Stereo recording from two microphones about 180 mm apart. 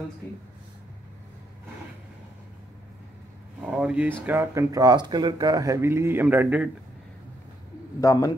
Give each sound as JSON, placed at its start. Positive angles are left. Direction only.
{"t": 3.6, "sound": "a sound", "side_deg": -5}
{"t": 4.3, "sound": "speech", "side_deg": -15}
{"t": 8.0, "sound": "a man's voice", "side_deg": 20}